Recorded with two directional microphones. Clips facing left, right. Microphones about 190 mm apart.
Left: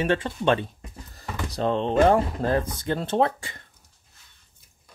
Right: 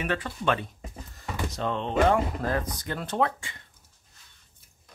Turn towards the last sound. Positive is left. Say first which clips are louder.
# left 5 dB
turn(degrees=25)  # may be behind; listen again after turning